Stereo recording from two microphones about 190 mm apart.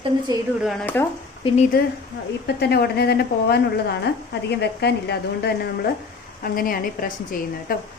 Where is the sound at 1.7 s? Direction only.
50° left (ahead or behind).